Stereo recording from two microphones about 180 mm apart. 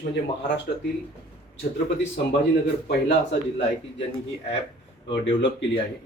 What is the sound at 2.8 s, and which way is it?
Speech, 70° left (ahead or behind).